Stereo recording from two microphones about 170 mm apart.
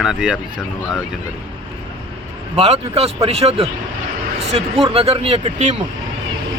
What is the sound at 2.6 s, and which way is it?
Speech, 35° right (ahead or behind).